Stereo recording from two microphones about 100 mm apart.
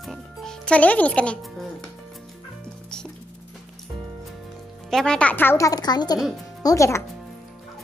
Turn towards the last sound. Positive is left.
turn(degrees=30)  # may be behind; listen again after turning